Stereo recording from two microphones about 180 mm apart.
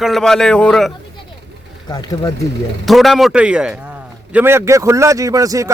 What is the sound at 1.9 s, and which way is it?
Speech, 20° left (ahead or behind).